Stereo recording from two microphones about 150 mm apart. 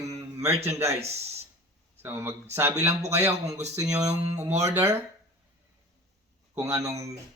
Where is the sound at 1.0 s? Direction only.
45° right (ahead or behind).